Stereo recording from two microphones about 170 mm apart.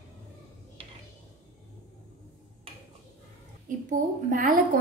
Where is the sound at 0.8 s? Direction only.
30° right (ahead or behind).